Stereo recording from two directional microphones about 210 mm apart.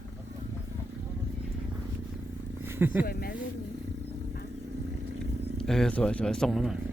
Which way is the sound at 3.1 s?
45° left (ahead or behind).